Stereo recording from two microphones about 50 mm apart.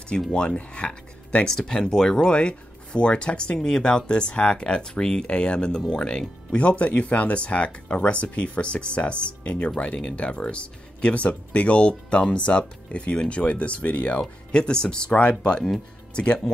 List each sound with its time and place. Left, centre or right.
0.3 s speech: centre
1.4 s speech: centre; by 14.2 s left
14.5 s speech: centre